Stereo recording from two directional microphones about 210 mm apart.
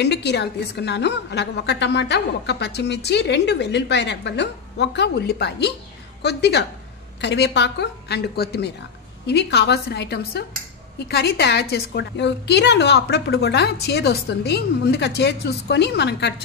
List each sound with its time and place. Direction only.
0.0 s a woman's voice: 55° left (ahead or behind)